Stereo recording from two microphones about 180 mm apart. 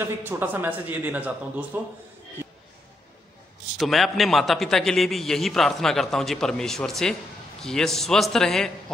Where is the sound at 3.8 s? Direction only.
Centre (ahead or behind).